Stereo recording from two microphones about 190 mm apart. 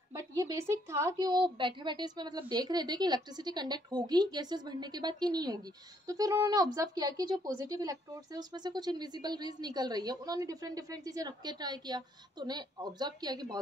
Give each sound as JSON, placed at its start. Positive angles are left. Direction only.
{"t": 0.1, "sound": "a woman's voice", "side_deg": -20}